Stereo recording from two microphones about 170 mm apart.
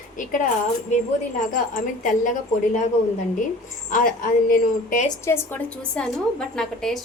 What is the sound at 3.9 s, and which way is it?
A woman's voice, 50° left (ahead or behind).